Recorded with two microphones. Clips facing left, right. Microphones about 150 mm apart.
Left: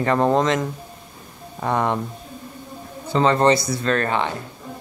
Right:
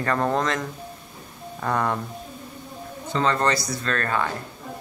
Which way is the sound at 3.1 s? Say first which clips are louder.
Left 6 dB; 30° left (ahead or behind).